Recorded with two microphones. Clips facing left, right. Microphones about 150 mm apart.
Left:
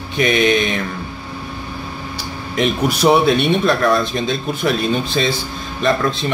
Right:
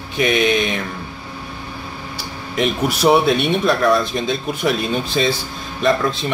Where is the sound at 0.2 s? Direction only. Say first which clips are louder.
Left 1 dB; 5° right (ahead or behind).